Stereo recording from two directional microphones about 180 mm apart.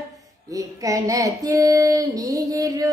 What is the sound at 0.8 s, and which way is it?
Child singing, 20° right (ahead or behind).